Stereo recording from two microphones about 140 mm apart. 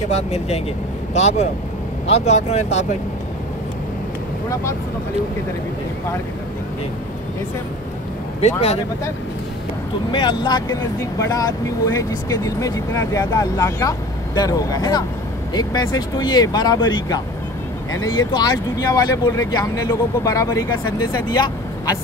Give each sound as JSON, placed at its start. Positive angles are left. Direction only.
{"t": 0.1, "sound": "speech", "side_deg": 50}
{"t": 8.4, "sound": "speech", "side_deg": 50}
{"t": 10.1, "sound": "speech", "side_deg": 30}
{"t": 18.3, "sound": "speech", "side_deg": 30}